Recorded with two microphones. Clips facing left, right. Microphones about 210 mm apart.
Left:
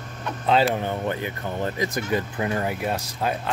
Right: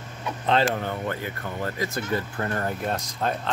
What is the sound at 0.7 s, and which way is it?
Speech, 20° left (ahead or behind).